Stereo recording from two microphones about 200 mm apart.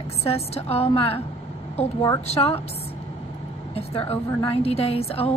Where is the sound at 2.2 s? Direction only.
30° left (ahead or behind).